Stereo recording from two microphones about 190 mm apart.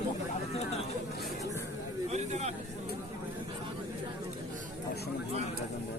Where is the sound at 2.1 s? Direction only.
35° right (ahead or behind).